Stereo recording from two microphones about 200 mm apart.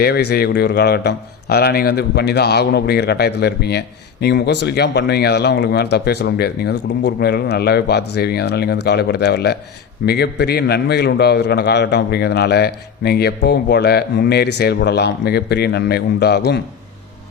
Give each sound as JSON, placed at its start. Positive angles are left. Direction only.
{"t": 0.0, "sound": "speech", "side_deg": 55}